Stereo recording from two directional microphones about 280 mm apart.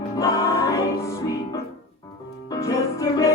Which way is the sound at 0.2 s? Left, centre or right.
Centre.